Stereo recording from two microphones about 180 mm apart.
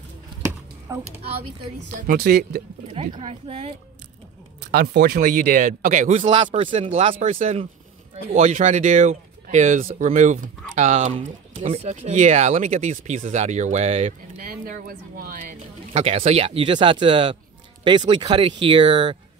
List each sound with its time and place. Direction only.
0.9 s a child's voice: 15° right (ahead or behind)
1.9 s speech: 55° right (ahead or behind)
2.9 s speech: 30° right (ahead or behind)
4.6 s speech: 60° right (ahead or behind); by 11.6 s 30° right (ahead or behind)
11.6 s speech: 40° right (ahead or behind)
14.4 s speech: 50° right (ahead or behind)
15.9 s speech: 35° right (ahead or behind)